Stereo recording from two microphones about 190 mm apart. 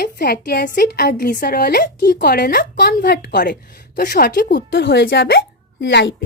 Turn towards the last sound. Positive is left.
turn(degrees=65)  # may be behind; listen again after turning